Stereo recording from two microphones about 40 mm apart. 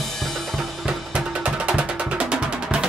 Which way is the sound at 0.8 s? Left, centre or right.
Centre.